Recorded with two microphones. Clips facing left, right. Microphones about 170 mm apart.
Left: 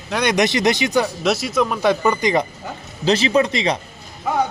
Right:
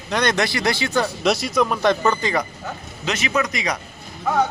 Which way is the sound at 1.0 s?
Centre (ahead or behind).